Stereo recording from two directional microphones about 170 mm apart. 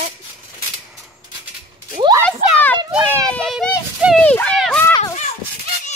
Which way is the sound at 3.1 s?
5° left (ahead or behind).